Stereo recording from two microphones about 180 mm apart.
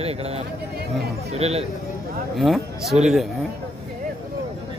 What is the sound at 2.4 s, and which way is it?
Speech, centre (ahead or behind).